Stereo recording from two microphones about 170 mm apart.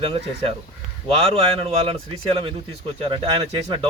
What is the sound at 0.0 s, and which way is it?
A man's voice, 35° right (ahead or behind).